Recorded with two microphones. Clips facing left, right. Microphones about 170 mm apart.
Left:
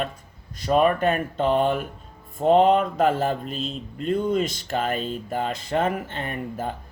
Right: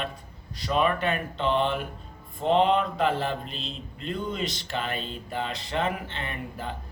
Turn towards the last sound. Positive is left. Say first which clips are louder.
# left 5 dB
turn(degrees=45)  # may be behind; listen again after turning